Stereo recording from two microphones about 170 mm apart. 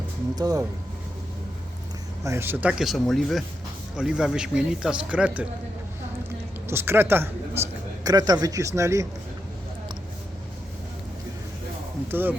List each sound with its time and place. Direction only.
0.3 s speech: 20° right (ahead or behind)
2.2 s a man's voice: 15° right (ahead or behind)
6.7 s a woman's voice: 15° right (ahead or behind)
12.1 s speech: 10° right (ahead or behind)